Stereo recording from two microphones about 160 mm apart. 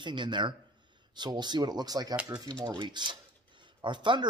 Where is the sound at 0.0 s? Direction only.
30° right (ahead or behind).